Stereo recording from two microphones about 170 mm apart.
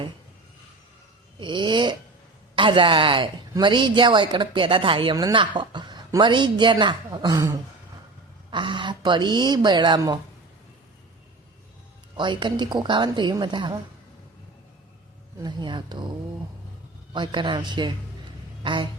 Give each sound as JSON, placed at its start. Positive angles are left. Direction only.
{"t": 1.4, "sound": "speech", "side_deg": -30}
{"t": 12.1, "sound": "speech", "side_deg": -25}
{"t": 15.4, "sound": "speech", "side_deg": -25}
{"t": 17.2, "sound": "speech", "side_deg": -30}